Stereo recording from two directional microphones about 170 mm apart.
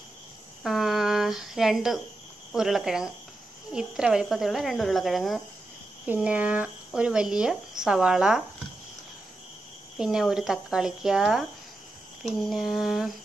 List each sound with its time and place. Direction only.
0.7 s speech: centre (ahead or behind)
9.9 s speech: 5° right (ahead or behind)
12.4 s speech: centre (ahead or behind)